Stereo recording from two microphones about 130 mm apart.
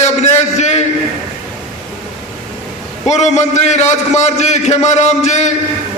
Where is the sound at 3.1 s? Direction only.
60° left (ahead or behind).